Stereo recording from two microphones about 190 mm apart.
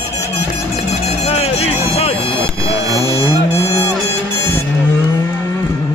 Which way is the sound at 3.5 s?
15° left (ahead or behind).